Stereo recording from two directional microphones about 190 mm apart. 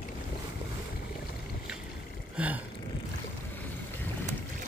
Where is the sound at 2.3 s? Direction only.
5° right (ahead or behind).